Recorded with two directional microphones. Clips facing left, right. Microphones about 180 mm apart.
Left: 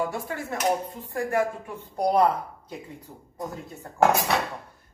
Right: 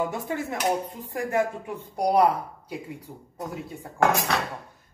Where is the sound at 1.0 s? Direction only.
15° right (ahead or behind).